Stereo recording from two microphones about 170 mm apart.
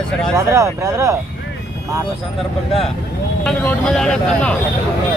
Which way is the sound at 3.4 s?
5° left (ahead or behind).